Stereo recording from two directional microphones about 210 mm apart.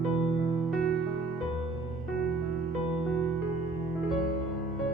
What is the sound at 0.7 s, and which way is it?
Music, centre (ahead or behind).